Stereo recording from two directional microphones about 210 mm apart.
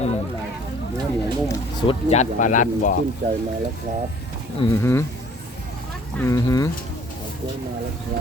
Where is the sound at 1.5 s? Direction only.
25° left (ahead or behind).